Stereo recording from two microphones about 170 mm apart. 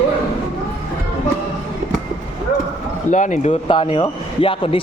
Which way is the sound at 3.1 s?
45° left (ahead or behind).